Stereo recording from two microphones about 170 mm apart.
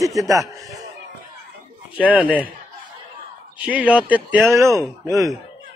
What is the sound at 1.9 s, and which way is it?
Speech, 10° right (ahead or behind).